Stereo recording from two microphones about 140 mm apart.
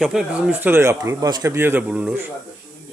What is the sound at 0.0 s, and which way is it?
Speech, 5° right (ahead or behind).